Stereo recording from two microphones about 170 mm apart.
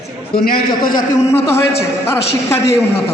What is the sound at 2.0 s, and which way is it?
A man's voice, 15° left (ahead or behind).